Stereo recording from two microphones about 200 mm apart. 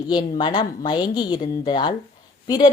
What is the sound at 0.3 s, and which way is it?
A woman's voice, 20° left (ahead or behind).